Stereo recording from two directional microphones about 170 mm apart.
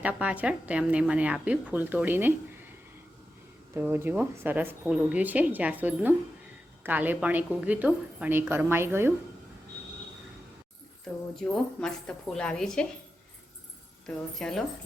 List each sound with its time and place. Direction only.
0.0 s speech: 10° right (ahead or behind)
3.8 s speech: 10° right (ahead or behind)
11.5 s speech: 5° left (ahead or behind)
14.3 s speech: centre (ahead or behind)